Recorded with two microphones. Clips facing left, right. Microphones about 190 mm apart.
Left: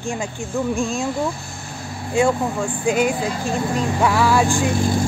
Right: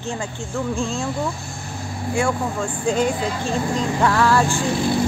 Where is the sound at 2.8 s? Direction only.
10° left (ahead or behind).